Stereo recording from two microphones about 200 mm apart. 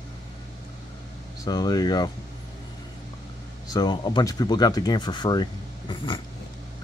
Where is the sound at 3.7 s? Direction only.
20° left (ahead or behind).